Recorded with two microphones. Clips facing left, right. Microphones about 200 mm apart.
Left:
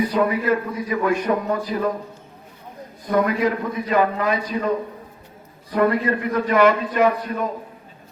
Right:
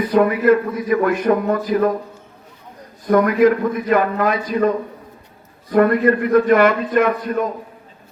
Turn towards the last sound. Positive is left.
turn(degrees=-55)  # may be behind; listen again after turning